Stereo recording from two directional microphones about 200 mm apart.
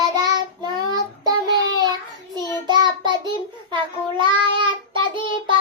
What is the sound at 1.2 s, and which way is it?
Child singing, 20° right (ahead or behind).